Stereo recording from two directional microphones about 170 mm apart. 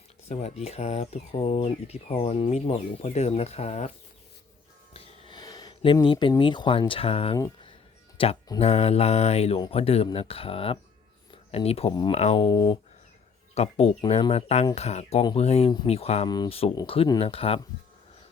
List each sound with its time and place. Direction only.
0.3 s speech: 40° left (ahead or behind)
4.9 s speech: 30° left (ahead or behind)
7.3 s speech: 25° left (ahead or behind)
8.4 s speech: 35° left (ahead or behind)
12.1 s speech: 40° left (ahead or behind)
13.5 s speech: 40° left (ahead or behind)